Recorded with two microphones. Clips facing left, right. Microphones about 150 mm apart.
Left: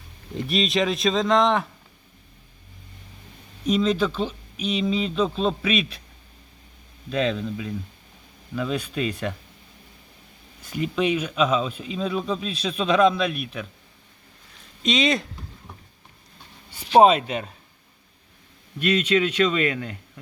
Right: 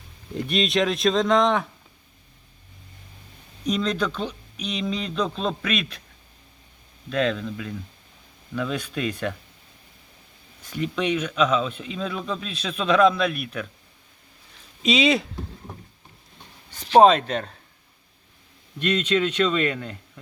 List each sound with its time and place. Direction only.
0.3 s speech: centre (ahead or behind)
3.7 s speech: 5° left (ahead or behind)
7.1 s speech: 5° left (ahead or behind)
10.7 s speech: 5° left (ahead or behind)
12.5 s a man's voice: 35° left (ahead or behind)
12.8 s speech: centre (ahead or behind)
14.8 s speech: 5° right (ahead or behind)
16.7 s speech: 10° left (ahead or behind)
18.8 s speech: 10° left (ahead or behind)